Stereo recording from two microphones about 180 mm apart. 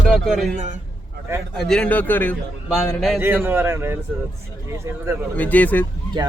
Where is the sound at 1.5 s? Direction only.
5° left (ahead or behind).